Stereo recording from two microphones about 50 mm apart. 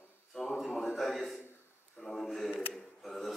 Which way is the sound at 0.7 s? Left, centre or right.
Left.